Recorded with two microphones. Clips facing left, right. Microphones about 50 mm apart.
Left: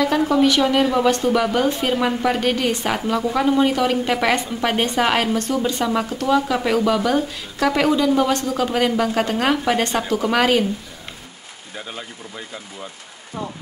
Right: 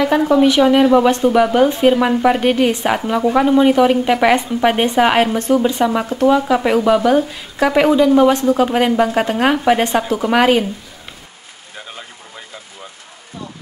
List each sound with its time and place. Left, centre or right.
0.0 s speech: centre